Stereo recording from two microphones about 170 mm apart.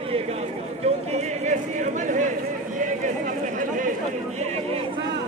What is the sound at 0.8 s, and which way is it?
A man's voice, 35° right (ahead or behind).